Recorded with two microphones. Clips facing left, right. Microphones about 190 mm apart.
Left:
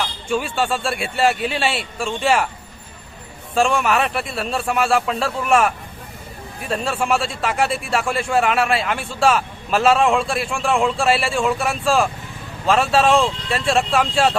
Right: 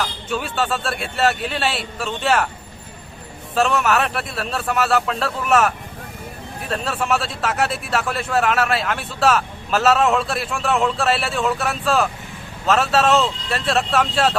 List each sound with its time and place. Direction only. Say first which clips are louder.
0.0 s speech: left 2 dB; centre (ahead or behind)
3.8 s speech: even; centre (ahead or behind)